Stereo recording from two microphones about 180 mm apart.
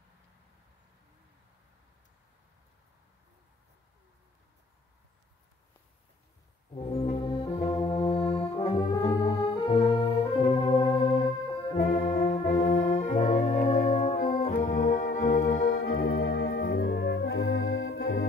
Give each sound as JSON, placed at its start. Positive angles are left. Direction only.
{"t": 6.7, "sound": "brass instrument", "side_deg": 35}
{"t": 7.7, "sound": "music", "side_deg": 30}
{"t": 8.6, "sound": "brass instrument", "side_deg": 30}
{"t": 9.3, "sound": "organ", "side_deg": 25}
{"t": 11.9, "sound": "brass instrument", "side_deg": 50}
{"t": 14.7, "sound": "organ", "side_deg": 50}